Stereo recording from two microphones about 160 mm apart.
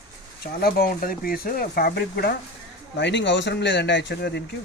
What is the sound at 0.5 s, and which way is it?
Speech, 70° left (ahead or behind).